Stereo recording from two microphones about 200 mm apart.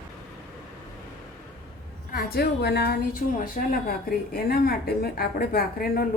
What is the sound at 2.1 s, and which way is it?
A woman's voice, 50° left (ahead or behind).